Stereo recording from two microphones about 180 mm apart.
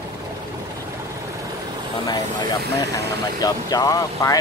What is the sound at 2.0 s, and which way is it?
Speech, 20° left (ahead or behind).